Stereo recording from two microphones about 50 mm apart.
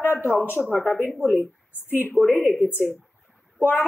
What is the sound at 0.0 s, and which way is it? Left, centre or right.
A woman's voice, left.